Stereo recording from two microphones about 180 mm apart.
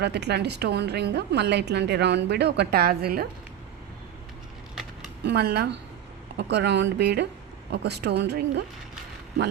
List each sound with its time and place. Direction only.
0.0 s a woman's voice: 70° right (ahead or behind)
4.7 s a sound: centre (ahead or behind)
5.2 s a woman's voice: 65° right (ahead or behind)